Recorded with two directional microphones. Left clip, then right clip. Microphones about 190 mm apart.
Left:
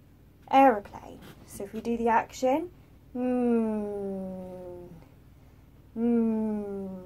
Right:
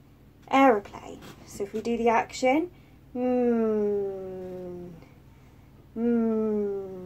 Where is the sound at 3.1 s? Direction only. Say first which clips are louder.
Right 3 dB; 20° left (ahead or behind).